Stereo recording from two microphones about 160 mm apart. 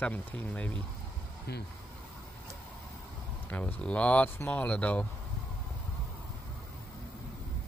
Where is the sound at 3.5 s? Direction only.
10° left (ahead or behind).